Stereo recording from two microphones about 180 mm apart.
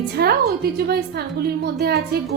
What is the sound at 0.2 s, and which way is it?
Speech, 60° right (ahead or behind).